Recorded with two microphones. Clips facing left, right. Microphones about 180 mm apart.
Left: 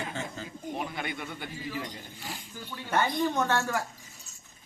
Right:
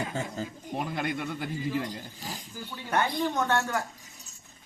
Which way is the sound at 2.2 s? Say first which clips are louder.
Right 1 dB; 35° right (ahead or behind).